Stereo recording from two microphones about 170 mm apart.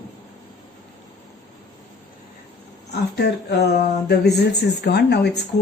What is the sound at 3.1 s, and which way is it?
Speech, 75° left (ahead or behind).